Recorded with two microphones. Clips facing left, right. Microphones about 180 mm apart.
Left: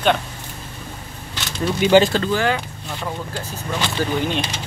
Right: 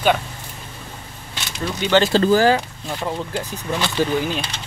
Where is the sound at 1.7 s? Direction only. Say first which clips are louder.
Left 4 dB; 10° left (ahead or behind).